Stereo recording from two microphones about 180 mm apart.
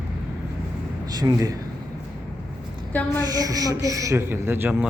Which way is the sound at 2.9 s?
10° left (ahead or behind).